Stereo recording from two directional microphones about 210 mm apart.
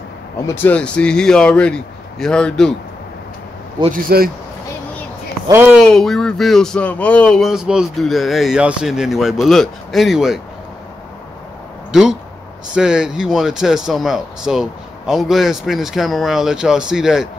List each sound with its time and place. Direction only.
0.5 s speech: 10° left (ahead or behind)
3.9 s speech: 45° right (ahead or behind)
5.5 s speech: 10° right (ahead or behind)
11.9 s speech: centre (ahead or behind)